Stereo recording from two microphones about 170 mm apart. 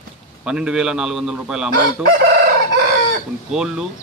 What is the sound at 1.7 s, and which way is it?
Chicken, 60° right (ahead or behind).